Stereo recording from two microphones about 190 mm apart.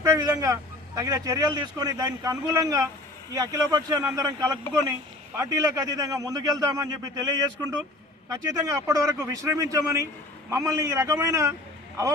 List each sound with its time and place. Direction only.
0.0 s speech: 20° right (ahead or behind)